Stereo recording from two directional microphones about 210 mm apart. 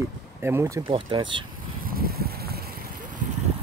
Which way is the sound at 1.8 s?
45° right (ahead or behind).